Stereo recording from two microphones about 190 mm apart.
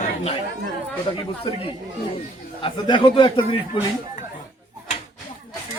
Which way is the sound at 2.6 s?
25° left (ahead or behind).